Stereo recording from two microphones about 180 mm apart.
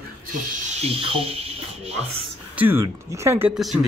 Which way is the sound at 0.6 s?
35° right (ahead or behind).